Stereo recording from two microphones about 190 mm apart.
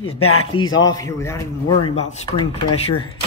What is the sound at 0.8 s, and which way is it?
Speech, 20° left (ahead or behind).